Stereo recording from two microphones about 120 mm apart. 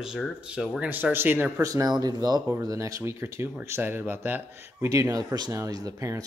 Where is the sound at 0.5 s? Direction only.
10° right (ahead or behind).